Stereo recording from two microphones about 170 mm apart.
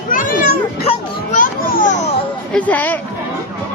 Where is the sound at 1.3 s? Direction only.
50° left (ahead or behind).